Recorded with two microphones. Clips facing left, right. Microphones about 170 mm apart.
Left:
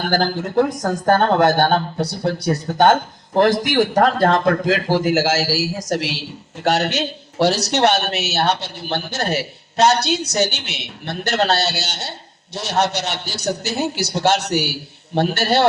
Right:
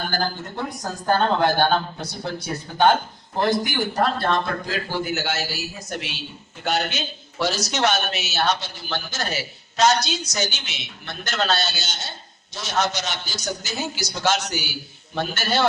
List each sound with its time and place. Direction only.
0.0 s a man's voice: 90° left
1.0 s speech: 55° left (ahead or behind)
3.3 s a man's voice: 90° left
6.7 s a man's voice: 75° left (ahead or behind)